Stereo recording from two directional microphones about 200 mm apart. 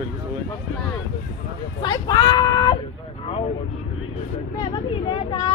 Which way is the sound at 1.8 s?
20° left (ahead or behind).